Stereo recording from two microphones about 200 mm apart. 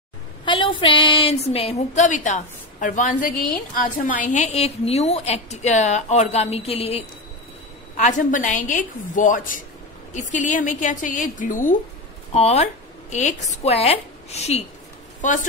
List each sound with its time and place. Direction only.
0.5 s a woman's voice: 25° left (ahead or behind)